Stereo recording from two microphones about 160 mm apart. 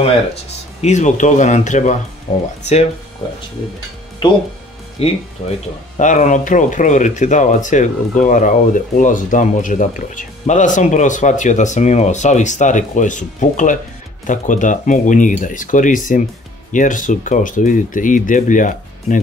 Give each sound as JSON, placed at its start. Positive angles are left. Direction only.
{"t": 0.7, "sound": "speech", "side_deg": 45}
{"t": 5.0, "sound": "speech", "side_deg": 40}
{"t": 5.9, "sound": "speech", "side_deg": 50}